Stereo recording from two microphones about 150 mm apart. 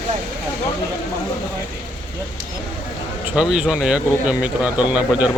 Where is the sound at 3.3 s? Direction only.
5° right (ahead or behind).